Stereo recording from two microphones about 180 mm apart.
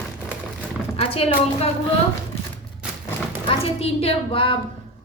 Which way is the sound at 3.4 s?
35° left (ahead or behind).